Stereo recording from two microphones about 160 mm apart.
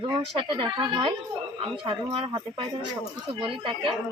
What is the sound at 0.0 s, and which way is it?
A woman's voice, 30° right (ahead or behind).